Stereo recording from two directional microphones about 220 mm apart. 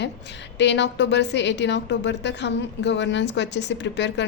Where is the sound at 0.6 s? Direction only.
55° left (ahead or behind).